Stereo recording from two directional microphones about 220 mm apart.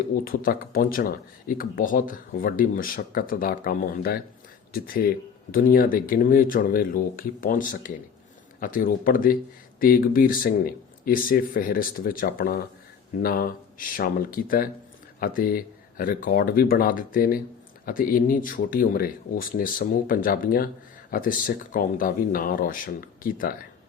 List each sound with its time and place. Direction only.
0.3 s speech: 40° left (ahead or behind)